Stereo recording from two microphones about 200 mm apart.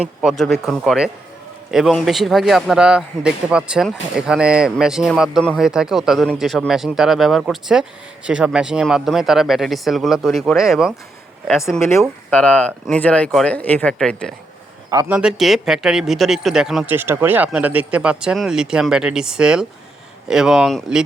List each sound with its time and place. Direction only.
0.0 s a man's voice: 5° right (ahead or behind)
11.9 s speech: 5° left (ahead or behind)
14.8 s a man's voice: 20° right (ahead or behind)
15.1 s a man's voice: 5° right (ahead or behind)